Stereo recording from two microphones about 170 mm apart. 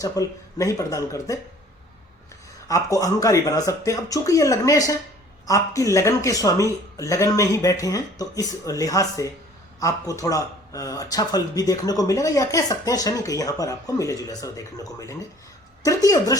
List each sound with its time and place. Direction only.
0.0 s speech: 20° left (ahead or behind)
2.6 s speech: 20° left (ahead or behind)